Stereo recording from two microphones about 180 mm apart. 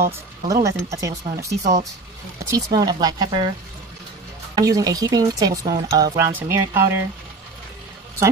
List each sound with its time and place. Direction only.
0.0 s speech: 20° right (ahead or behind)
2.5 s speech: 20° right (ahead or behind)
4.6 s speech: 20° right (ahead or behind)